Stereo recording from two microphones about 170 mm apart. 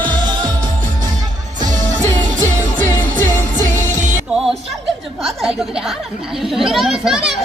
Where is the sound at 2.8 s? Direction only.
10° left (ahead or behind).